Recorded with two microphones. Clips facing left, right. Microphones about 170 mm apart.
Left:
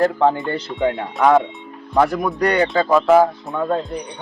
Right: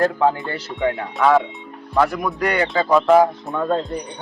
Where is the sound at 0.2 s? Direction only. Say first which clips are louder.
Left 2 dB; 5° right (ahead or behind).